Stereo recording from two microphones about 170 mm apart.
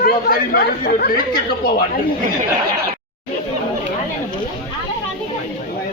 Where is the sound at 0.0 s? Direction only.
60° left (ahead or behind).